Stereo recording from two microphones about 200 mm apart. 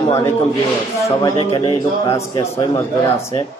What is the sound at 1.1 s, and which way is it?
A man's voice, 20° left (ahead or behind).